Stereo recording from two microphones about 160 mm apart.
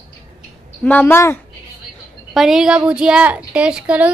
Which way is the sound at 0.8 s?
10° left (ahead or behind).